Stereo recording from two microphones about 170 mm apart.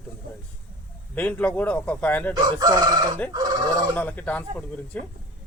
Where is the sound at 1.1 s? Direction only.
10° left (ahead or behind).